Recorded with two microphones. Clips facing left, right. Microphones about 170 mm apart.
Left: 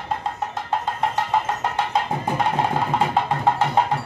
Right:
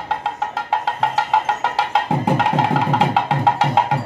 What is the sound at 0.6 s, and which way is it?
Music, 90° right.